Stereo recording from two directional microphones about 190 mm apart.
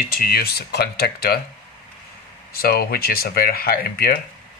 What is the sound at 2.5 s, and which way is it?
Speech, 55° left (ahead or behind).